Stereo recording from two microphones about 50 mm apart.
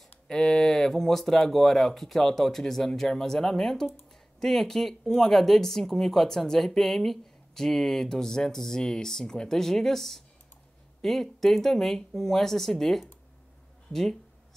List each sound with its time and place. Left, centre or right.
0.3 s speech: centre